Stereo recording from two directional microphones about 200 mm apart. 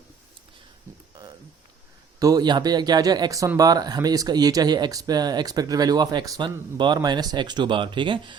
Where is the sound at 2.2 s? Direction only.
20° right (ahead or behind).